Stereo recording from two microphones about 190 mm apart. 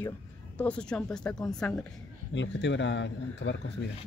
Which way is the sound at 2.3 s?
70° left (ahead or behind).